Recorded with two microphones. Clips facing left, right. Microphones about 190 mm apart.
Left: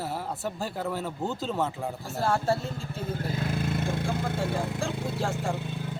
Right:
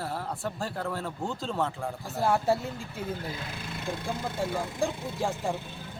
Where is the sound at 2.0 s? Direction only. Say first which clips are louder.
Right 1 dB; 15° right (ahead or behind).